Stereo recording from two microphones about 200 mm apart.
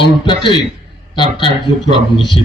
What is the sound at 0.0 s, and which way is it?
A man's voice, 25° left (ahead or behind).